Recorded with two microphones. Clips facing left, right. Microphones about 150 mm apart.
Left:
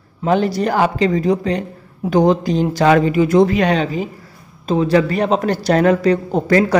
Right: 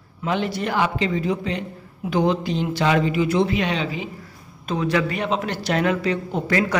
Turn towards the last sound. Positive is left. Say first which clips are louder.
# left 7 dB
turn(degrees=35)  # may be behind; listen again after turning